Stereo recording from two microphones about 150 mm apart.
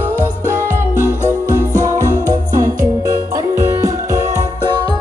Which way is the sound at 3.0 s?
20° right (ahead or behind).